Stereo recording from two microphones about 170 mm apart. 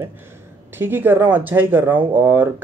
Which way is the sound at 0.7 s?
15° right (ahead or behind).